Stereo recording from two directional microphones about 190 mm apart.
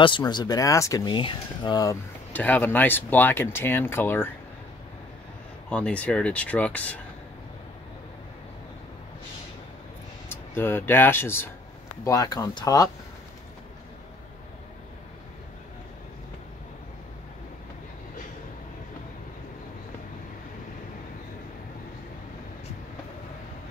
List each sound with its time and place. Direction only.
0.0 s speech: 25° left (ahead or behind)
5.7 s speech: 5° left (ahead or behind)
10.3 s speech: 10° left (ahead or behind)